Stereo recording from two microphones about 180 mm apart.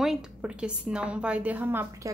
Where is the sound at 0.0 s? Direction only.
5° right (ahead or behind).